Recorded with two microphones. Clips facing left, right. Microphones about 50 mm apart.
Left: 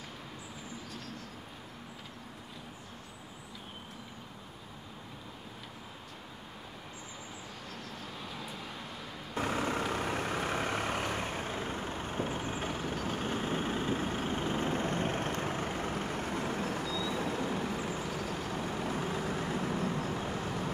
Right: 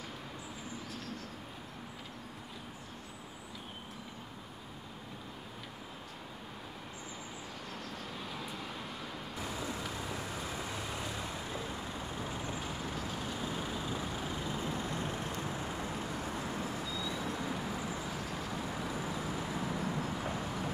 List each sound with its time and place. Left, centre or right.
8.0 s vehicle: centre
9.3 s vehicle: left